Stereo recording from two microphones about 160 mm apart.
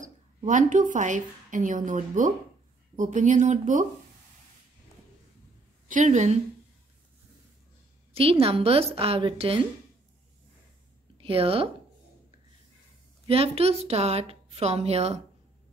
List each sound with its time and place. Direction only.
0.0 s a woman's voice: 50° right (ahead or behind)
5.9 s speech: 50° right (ahead or behind)
8.1 s a woman's voice: 35° right (ahead or behind)
11.1 s speech: 35° right (ahead or behind)
13.3 s a woman's voice: 40° right (ahead or behind)